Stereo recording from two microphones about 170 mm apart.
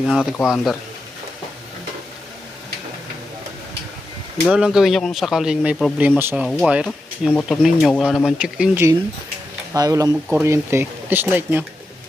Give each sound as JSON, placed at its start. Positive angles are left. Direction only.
{"t": 0.1, "sound": "speech", "side_deg": 0}
{"t": 4.4, "sound": "speech", "side_deg": -5}